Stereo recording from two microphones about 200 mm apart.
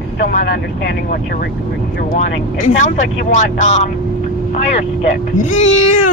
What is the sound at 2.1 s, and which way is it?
Speech, 40° left (ahead or behind).